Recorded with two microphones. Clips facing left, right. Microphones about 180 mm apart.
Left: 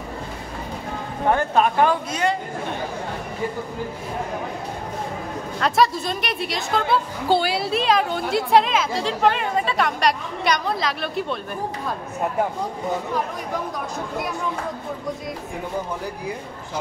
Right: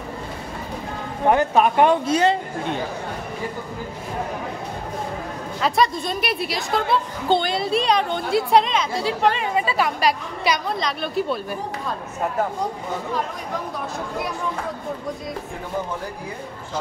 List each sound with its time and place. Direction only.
1.3 s speech: 15° right (ahead or behind)
5.6 s a woman's voice: centre (ahead or behind)